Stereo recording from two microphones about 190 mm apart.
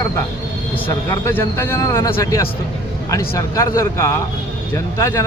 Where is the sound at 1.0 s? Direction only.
10° left (ahead or behind).